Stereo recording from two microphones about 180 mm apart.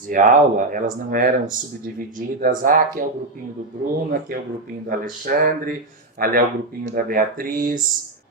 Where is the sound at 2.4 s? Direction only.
50° right (ahead or behind).